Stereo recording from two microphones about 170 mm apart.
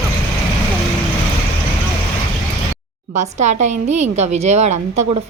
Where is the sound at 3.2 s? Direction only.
45° right (ahead or behind).